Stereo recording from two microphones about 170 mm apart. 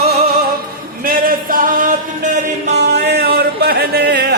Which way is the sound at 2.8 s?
70° right (ahead or behind).